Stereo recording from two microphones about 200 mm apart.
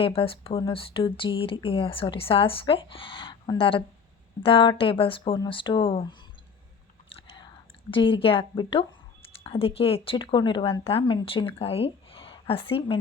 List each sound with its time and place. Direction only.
0.0 s speech: 30° left (ahead or behind)
7.1 s whispering: 25° left (ahead or behind)
9.4 s speech: 30° left (ahead or behind)